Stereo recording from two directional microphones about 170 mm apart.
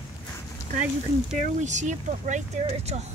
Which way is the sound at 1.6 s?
45° right (ahead or behind).